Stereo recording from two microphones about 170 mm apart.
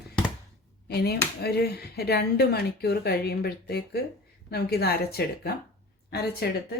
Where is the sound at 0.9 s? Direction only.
70° left (ahead or behind).